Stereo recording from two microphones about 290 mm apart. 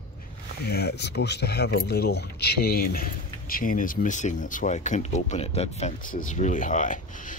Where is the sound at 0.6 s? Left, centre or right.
Left.